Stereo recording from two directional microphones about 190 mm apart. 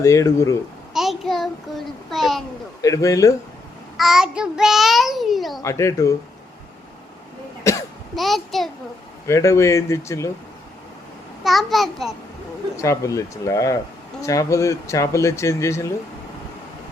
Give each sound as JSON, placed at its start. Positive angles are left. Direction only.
{"t": 0.0, "sound": "speech", "side_deg": 15}
{"t": 0.9, "sound": "child singing", "side_deg": 0}
{"t": 2.8, "sound": "speech", "side_deg": 15}
{"t": 3.9, "sound": "a child's voice", "side_deg": 0}
{"t": 5.6, "sound": "speech", "side_deg": 15}
{"t": 7.6, "sound": "cough", "side_deg": 15}
{"t": 8.1, "sound": "a child's voice", "side_deg": 0}
{"t": 9.2, "sound": "speech", "side_deg": 15}
{"t": 11.4, "sound": "a child's voice", "side_deg": 0}
{"t": 12.7, "sound": "speech", "side_deg": 15}